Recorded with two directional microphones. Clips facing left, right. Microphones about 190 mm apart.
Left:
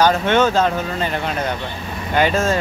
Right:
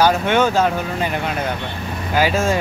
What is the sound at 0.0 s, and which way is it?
Speech, 10° right (ahead or behind).